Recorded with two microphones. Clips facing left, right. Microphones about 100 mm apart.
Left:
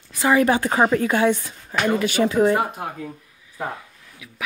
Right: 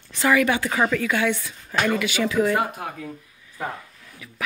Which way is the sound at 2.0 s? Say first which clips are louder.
Left 4 dB; 40° left (ahead or behind).